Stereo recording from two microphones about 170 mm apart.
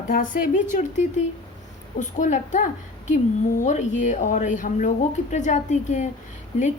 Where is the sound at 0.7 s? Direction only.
45° left (ahead or behind).